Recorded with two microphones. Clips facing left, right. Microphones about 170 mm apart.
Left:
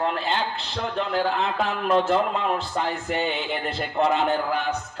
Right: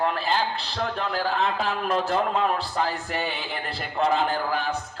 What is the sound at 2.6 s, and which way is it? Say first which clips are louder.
A man's voice: even; 20° left (ahead or behind).